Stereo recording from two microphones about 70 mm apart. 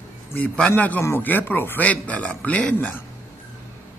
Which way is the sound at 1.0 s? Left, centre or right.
Left.